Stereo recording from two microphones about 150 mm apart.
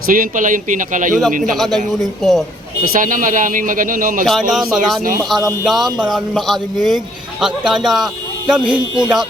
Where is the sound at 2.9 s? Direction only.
60° right (ahead or behind).